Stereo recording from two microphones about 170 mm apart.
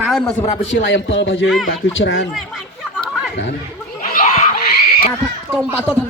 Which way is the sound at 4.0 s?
50° left (ahead or behind).